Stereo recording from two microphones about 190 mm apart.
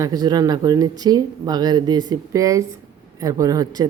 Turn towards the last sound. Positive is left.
turn(degrees=-20)  # may be behind; listen again after turning